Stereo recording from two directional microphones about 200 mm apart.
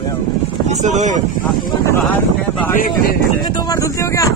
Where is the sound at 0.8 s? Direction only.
35° right (ahead or behind).